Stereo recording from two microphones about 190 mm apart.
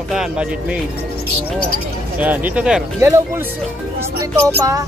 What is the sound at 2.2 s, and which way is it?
Speech, 10° right (ahead or behind).